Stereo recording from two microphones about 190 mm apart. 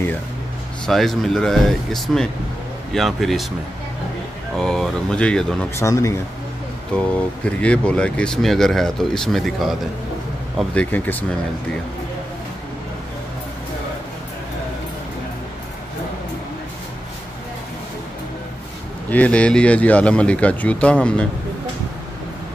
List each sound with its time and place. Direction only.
0.8 s speech: centre (ahead or behind)
4.6 s speech: 5° left (ahead or behind)
5.8 s speech: 15° left (ahead or behind)
19.0 s speech: 5° left (ahead or behind)